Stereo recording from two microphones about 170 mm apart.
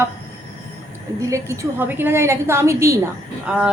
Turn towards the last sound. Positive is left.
turn(degrees=-5)  # may be behind; listen again after turning